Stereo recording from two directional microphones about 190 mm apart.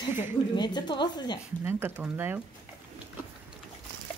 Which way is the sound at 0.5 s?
25° left (ahead or behind).